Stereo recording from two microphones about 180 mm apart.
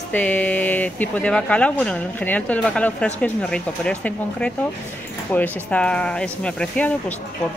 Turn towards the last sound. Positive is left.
turn(degrees=10)  # may be behind; listen again after turning